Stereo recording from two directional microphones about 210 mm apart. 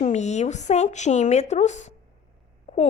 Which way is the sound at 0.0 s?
35° left (ahead or behind).